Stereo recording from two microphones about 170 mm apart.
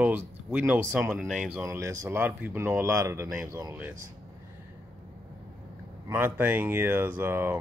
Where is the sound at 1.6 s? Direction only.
20° right (ahead or behind).